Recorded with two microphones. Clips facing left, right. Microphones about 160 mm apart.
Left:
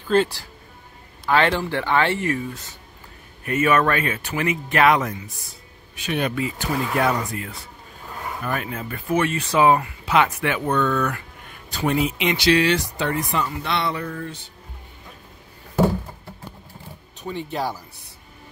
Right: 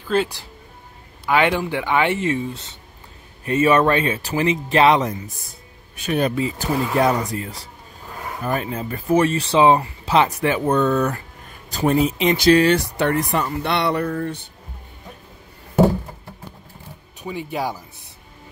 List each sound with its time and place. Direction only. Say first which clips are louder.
0.1 s speech: left 2 dB; 5° right (ahead or behind); by 5.2 s 25° right (ahead or behind)
6.0 s speech: right 4 dB; 40° right (ahead or behind)
17.2 s speech: right 1 dB; 10° right (ahead or behind)